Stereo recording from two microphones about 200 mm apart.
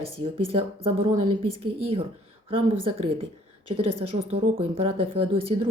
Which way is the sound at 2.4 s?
25° right (ahead or behind).